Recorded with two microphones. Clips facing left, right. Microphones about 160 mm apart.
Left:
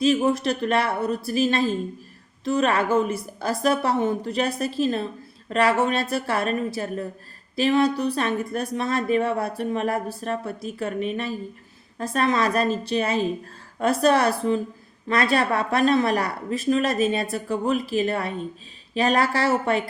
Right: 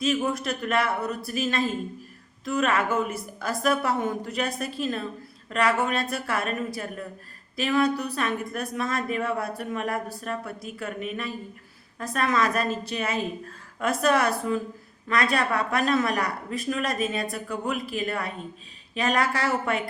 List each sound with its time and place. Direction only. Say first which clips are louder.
0.0 s a woman's voice: left 6 dB; 30° left (ahead or behind)